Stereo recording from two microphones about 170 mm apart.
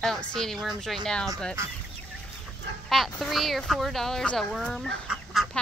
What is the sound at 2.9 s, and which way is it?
Speech, centre (ahead or behind).